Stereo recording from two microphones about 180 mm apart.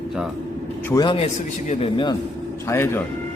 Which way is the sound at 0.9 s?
20° left (ahead or behind).